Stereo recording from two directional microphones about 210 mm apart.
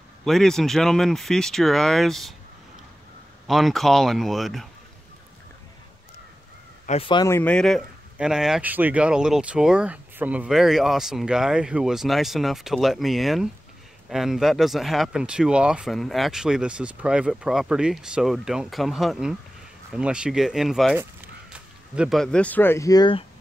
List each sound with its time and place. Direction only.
0.2 s speech: centre (ahead or behind)
3.4 s speech: centre (ahead or behind)
6.9 s speech: 25° left (ahead or behind)
7.3 s speech: 5° left (ahead or behind); by 23.2 s 20° left (ahead or behind)